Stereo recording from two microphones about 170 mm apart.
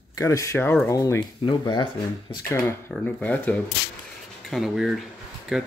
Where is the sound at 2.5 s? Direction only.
5° left (ahead or behind).